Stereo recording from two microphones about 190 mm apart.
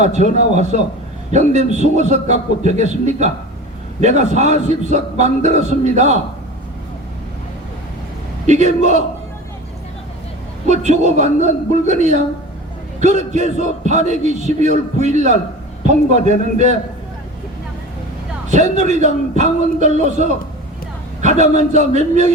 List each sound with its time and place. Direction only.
0.0 s a man's voice: 40° right (ahead or behind)
8.4 s a man's voice: 40° right (ahead or behind)
10.7 s a man's voice: 40° right (ahead or behind)
18.5 s a man's voice: 40° right (ahead or behind)